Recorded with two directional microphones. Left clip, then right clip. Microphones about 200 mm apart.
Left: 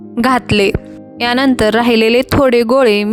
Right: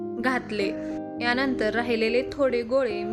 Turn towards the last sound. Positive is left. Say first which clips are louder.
# left 14 dB
turn(degrees=55)  # may be behind; listen again after turning